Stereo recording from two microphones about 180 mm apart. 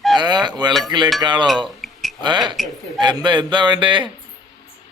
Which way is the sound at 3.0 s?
25° right (ahead or behind).